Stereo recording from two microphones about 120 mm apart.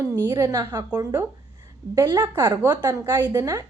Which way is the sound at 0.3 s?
35° right (ahead or behind).